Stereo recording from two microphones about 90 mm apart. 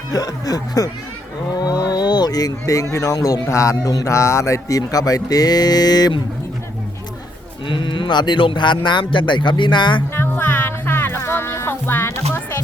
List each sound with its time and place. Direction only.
0.1 s a man's voice: 45° left (ahead or behind)
7.7 s speech: 65° left (ahead or behind)
10.2 s music: 25° left (ahead or behind)